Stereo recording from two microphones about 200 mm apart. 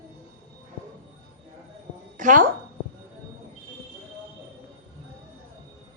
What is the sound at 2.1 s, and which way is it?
Speech, 40° right (ahead or behind).